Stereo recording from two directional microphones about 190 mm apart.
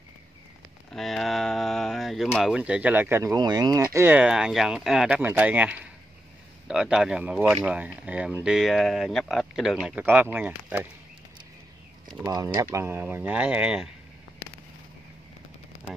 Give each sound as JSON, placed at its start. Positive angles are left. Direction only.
{"t": 0.9, "sound": "speech", "side_deg": 0}
{"t": 12.1, "sound": "speech", "side_deg": -20}